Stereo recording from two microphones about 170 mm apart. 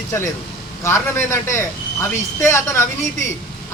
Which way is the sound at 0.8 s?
15° left (ahead or behind).